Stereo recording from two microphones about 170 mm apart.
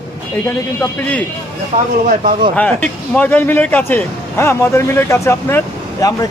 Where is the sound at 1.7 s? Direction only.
45° right (ahead or behind).